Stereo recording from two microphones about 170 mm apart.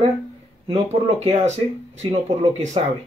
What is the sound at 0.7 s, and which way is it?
Speech, 40° right (ahead or behind).